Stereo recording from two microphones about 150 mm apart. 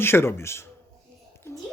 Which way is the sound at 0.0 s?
15° left (ahead or behind).